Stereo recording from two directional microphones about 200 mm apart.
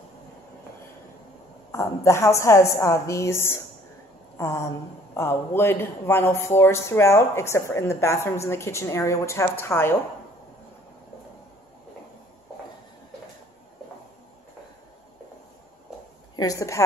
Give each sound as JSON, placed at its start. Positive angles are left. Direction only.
{"t": 1.7, "sound": "speech", "side_deg": 15}
{"t": 16.3, "sound": "speech", "side_deg": 15}